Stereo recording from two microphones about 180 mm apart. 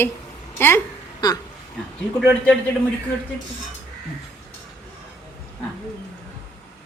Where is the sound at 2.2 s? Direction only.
5° right (ahead or behind).